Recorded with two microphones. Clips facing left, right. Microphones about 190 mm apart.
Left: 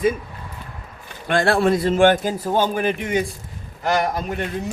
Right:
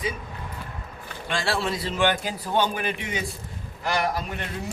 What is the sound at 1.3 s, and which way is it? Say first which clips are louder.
Speech: left 9 dB; 55° left (ahead or behind).